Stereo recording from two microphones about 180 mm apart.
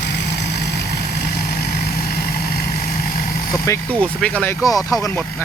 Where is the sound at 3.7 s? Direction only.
15° left (ahead or behind).